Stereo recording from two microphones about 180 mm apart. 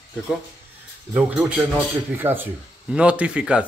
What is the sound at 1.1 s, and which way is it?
Speech, 10° right (ahead or behind).